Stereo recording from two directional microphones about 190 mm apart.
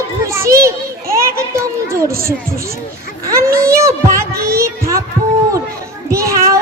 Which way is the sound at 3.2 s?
15° right (ahead or behind).